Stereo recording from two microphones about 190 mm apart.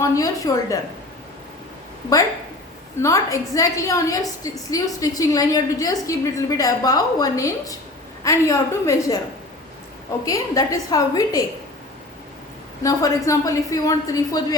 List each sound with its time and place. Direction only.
0.0 s a woman's voice: 15° left (ahead or behind)
3.0 s a woman's voice: 15° left (ahead or behind)
10.2 s a woman's voice: 15° left (ahead or behind)
12.8 s a woman's voice: 20° left (ahead or behind)